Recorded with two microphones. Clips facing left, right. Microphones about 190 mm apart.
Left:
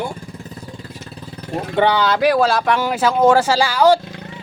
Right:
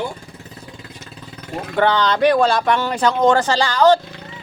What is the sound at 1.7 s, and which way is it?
Speech, 10° left (ahead or behind).